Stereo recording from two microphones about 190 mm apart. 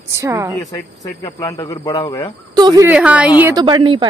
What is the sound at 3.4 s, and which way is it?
Speech, 20° right (ahead or behind).